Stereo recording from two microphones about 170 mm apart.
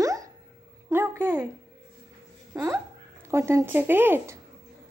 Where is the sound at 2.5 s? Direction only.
20° right (ahead or behind).